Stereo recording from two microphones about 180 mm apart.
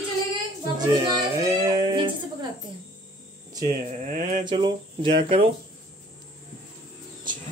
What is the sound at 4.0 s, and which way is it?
Mantra, 40° right (ahead or behind).